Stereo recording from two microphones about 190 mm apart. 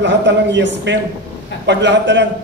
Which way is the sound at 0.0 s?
65° right (ahead or behind).